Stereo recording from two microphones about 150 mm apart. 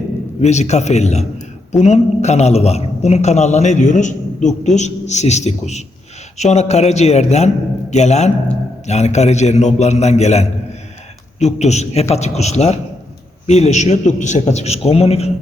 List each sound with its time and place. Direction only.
0.4 s a man's voice: 50° left (ahead or behind)